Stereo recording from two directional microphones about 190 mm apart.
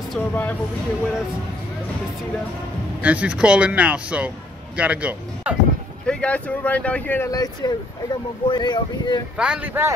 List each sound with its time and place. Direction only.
0.1 s speech: 10° left (ahead or behind)
3.0 s speech: 5° right (ahead or behind)
6.0 s speech: 5° left (ahead or behind); by 9.2 s 20° left (ahead or behind)
9.4 s speech: 5° right (ahead or behind)